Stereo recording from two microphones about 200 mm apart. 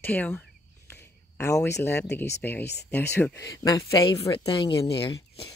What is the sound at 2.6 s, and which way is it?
Speech, 55° left (ahead or behind).